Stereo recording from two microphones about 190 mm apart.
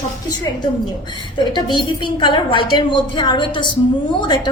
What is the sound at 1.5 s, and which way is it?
A woman's voice, 25° left (ahead or behind).